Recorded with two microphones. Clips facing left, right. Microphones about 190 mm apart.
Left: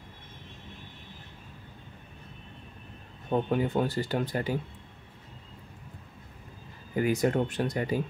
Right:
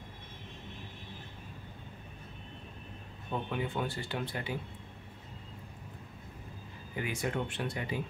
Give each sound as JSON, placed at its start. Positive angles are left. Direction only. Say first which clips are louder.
{"t": 3.3, "sound": "speech", "louder": "left 8 dB", "side_deg": 40}
{"t": 7.0, "sound": "speech", "louder": "left 9 dB", "side_deg": 40}